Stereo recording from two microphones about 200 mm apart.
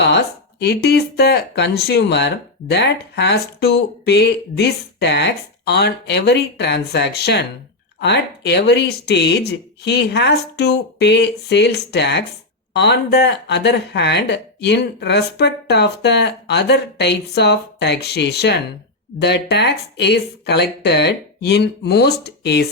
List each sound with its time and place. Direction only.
0.6 s speech: 55° left (ahead or behind)